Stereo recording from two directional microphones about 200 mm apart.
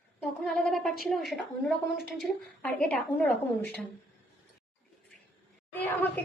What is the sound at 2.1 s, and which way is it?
Speech, 5° left (ahead or behind).